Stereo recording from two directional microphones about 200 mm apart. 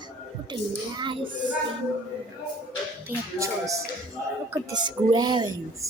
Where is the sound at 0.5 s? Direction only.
25° right (ahead or behind).